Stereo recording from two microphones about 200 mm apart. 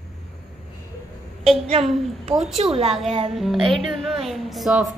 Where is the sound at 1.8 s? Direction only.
30° right (ahead or behind).